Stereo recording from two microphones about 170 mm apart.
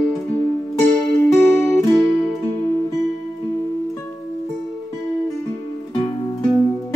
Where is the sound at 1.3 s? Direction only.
15° left (ahead or behind).